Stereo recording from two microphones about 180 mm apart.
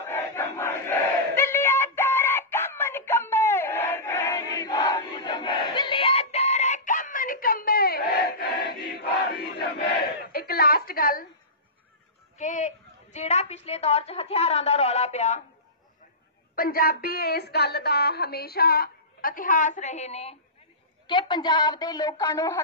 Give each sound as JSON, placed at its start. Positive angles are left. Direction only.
{"t": 0.0, "sound": "battle cry", "side_deg": 10}
{"t": 12.4, "sound": "a sound", "side_deg": 40}
{"t": 16.5, "sound": "a woman's voice", "side_deg": 55}
{"t": 21.1, "sound": "a woman's voice", "side_deg": 25}